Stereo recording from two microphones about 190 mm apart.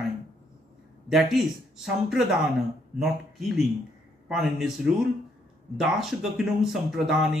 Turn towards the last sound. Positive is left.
turn(degrees=0)  # may be behind; listen again after turning